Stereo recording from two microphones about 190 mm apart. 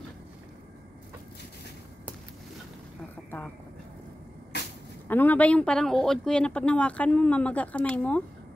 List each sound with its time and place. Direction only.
4.5 s vehicle: 60° left (ahead or behind)
5.0 s speech: 10° left (ahead or behind)